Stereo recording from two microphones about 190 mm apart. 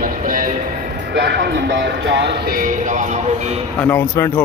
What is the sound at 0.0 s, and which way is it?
Music, 45° right (ahead or behind).